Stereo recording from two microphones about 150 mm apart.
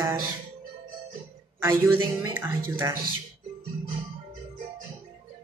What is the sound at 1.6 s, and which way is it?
A woman's voice, 15° right (ahead or behind).